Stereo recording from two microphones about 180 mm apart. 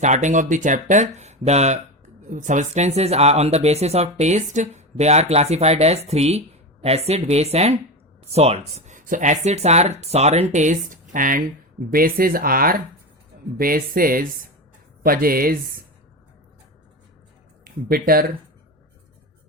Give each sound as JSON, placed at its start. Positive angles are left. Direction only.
{"t": 0.0, "sound": "speech", "side_deg": -40}
{"t": 17.8, "sound": "speech", "side_deg": -55}